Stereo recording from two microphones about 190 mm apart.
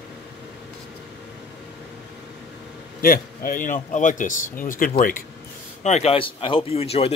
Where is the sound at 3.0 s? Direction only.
50° left (ahead or behind).